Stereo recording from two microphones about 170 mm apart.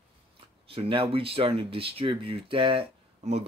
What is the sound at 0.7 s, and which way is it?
Speech, 30° right (ahead or behind).